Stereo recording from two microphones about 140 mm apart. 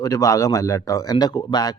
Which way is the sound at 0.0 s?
25° left (ahead or behind).